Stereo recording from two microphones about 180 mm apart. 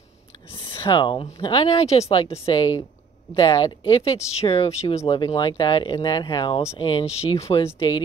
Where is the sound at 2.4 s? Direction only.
25° left (ahead or behind).